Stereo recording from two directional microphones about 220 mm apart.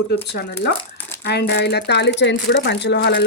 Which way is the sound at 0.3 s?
50° left (ahead or behind).